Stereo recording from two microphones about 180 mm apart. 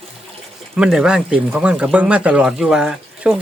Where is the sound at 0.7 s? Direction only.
5° right (ahead or behind).